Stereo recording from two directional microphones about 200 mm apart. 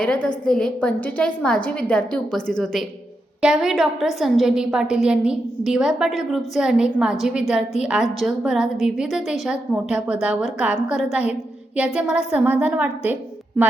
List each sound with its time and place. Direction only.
0.0 s a woman's voice: 5° left (ahead or behind)